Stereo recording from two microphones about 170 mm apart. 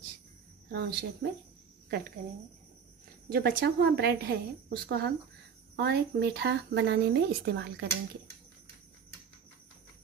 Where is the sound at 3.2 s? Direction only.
65° right (ahead or behind).